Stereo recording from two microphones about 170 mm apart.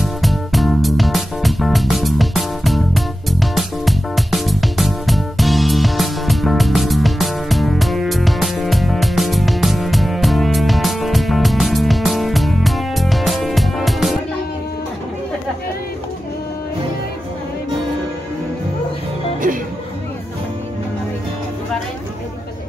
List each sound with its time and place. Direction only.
0.0 s music: centre (ahead or behind)
19.4 s music: 45° right (ahead or behind)